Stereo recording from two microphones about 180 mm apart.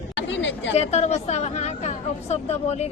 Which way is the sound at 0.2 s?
85° left.